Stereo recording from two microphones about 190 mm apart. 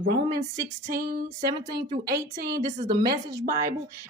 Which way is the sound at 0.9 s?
45° right (ahead or behind).